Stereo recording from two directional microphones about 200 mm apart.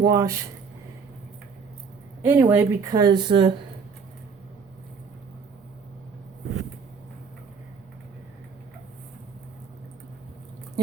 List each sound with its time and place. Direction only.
0.0 s speech: 15° right (ahead or behind)
2.2 s speech: 10° right (ahead or behind)